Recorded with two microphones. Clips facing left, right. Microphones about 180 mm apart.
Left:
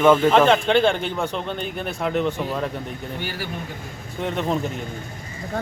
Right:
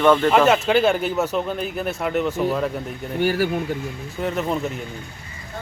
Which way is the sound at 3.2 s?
45° right (ahead or behind).